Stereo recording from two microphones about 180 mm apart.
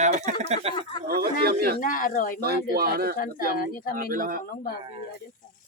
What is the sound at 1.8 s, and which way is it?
Speech, 50° left (ahead or behind).